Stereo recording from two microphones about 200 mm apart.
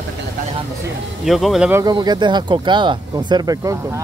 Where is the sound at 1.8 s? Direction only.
20° right (ahead or behind).